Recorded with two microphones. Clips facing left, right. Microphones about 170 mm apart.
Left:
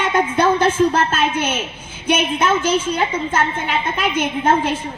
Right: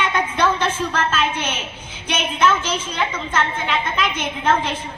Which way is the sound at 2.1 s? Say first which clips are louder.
Left 1 dB; 50° left (ahead or behind).